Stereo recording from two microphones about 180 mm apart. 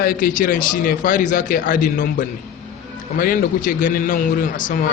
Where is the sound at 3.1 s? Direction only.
50° left (ahead or behind).